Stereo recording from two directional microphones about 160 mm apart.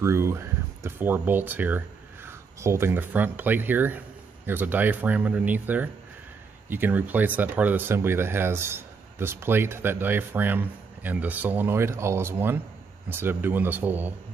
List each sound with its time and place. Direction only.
0.0 s speech: 15° right (ahead or behind)